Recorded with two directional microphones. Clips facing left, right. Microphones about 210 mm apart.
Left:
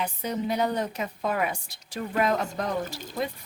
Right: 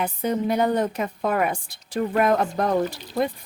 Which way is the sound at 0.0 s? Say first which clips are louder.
Right 5 dB; 55° right (ahead or behind).